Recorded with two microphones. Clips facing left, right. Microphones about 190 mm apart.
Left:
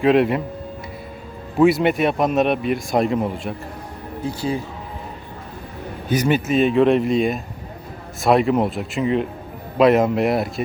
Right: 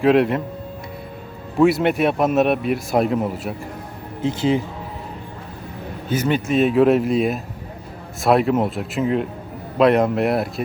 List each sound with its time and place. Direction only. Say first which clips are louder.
0.0 s a man's voice: even; centre (ahead or behind)
1.5 s a man's voice: even; centre (ahead or behind)
4.2 s speech: right 5 dB; 20° right (ahead or behind)
6.1 s a man's voice: left 2 dB; 15° left (ahead or behind)
6.5 s a man's voice: right 1 dB; centre (ahead or behind)